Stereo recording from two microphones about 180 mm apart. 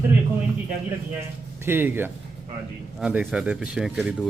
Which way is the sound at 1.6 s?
10° right (ahead or behind).